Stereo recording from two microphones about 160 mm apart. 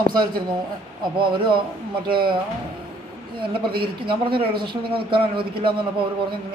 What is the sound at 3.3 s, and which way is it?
Speech, 35° right (ahead or behind).